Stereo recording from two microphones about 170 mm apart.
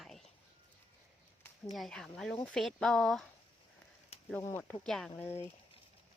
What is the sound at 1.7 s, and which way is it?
Speech, centre (ahead or behind).